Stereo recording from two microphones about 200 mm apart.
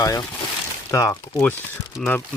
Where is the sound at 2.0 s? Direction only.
Centre (ahead or behind).